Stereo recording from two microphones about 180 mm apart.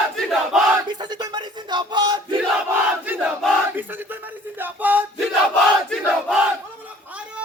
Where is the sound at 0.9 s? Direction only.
25° right (ahead or behind).